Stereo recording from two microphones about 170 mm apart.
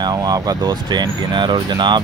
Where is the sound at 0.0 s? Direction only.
20° right (ahead or behind).